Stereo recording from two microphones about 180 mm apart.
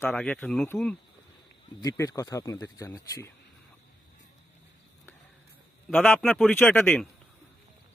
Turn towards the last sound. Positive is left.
turn(degrees=5)  # may be behind; listen again after turning